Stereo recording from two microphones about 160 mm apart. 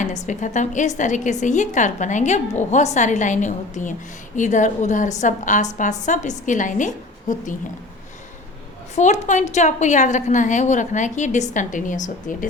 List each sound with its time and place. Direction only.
0.0 s a woman's voice: 50° left (ahead or behind)
9.0 s a woman's voice: 45° left (ahead or behind)